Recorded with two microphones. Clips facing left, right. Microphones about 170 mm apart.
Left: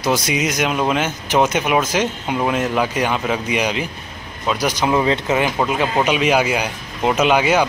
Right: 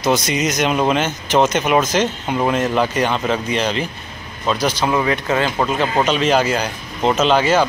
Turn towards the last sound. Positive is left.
turn(degrees=10)  # may be behind; listen again after turning